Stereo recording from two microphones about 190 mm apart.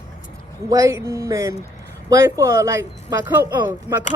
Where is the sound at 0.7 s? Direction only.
15° right (ahead or behind).